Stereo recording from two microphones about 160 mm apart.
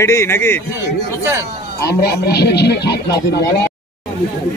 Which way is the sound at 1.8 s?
90° left.